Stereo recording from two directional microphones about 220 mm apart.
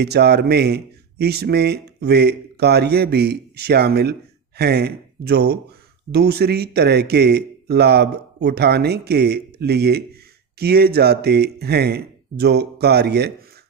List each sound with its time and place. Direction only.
0.0 s speech: 50° right (ahead or behind)